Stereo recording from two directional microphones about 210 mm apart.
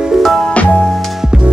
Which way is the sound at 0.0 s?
Centre (ahead or behind).